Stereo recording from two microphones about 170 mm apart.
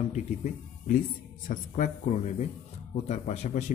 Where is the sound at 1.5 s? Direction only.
45° left (ahead or behind).